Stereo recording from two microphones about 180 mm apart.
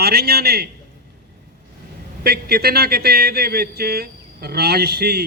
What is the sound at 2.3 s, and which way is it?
Speech, 60° right (ahead or behind).